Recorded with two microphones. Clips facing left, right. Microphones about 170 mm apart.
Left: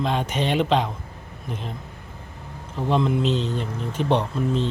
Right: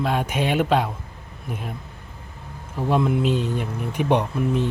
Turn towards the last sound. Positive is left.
turn(degrees=-10)  # may be behind; listen again after turning